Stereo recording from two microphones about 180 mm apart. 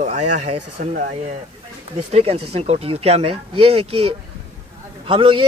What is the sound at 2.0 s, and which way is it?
A man's voice, 35° right (ahead or behind).